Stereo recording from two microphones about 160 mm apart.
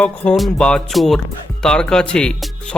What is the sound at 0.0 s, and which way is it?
Speech, 5° left (ahead or behind).